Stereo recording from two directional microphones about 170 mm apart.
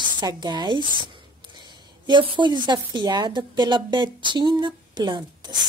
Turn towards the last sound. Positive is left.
turn(degrees=-25)  # may be behind; listen again after turning